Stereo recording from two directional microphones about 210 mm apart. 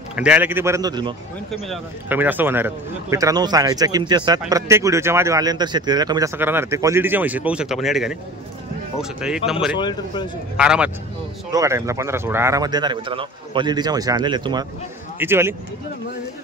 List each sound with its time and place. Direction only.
0.1 s speech: 5° right (ahead or behind)
1.5 s speech: 5° right (ahead or behind)
9.2 s speech: 5° right (ahead or behind)
9.8 s speech: 20° left (ahead or behind)
10.6 s speech: 5° right (ahead or behind)